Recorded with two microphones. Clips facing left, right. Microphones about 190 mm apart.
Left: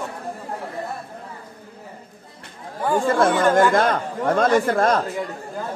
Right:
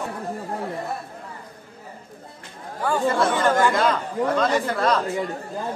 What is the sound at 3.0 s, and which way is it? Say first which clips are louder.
Speech: left 3 dB; 50° left (ahead or behind).